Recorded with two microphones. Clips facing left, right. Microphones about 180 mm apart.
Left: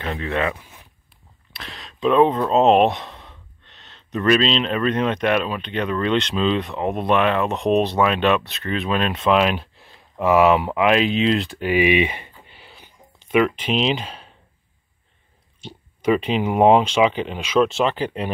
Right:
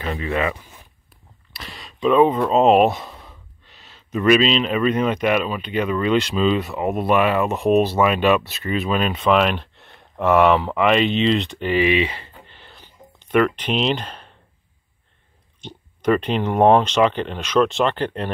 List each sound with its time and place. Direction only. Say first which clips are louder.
0.0 s speech: right 1 dB; 5° right (ahead or behind)
15.6 s speech: even; 5° left (ahead or behind)